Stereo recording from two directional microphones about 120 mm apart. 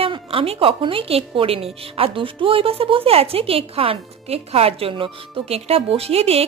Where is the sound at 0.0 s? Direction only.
50° right (ahead or behind).